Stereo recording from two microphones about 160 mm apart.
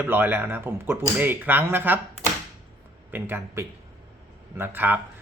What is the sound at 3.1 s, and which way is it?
Speech, 10° right (ahead or behind).